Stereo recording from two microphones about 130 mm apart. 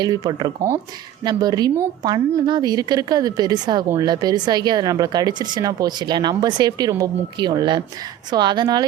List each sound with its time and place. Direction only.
0.0 s speech: 30° right (ahead or behind)